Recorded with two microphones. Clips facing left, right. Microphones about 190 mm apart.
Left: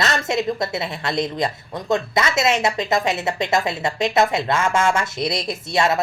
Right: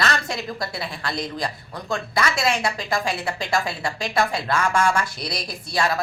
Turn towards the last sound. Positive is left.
turn(degrees=25)  # may be behind; listen again after turning